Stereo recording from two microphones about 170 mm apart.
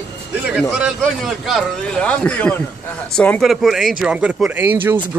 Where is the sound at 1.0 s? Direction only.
Centre (ahead or behind).